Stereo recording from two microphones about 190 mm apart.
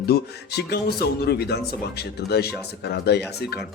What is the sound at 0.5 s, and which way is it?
Speech, 55° left (ahead or behind).